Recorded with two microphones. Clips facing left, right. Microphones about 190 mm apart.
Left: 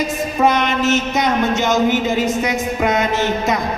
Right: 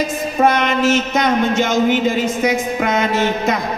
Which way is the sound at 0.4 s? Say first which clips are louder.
Right 1 dB; 50° right (ahead or behind).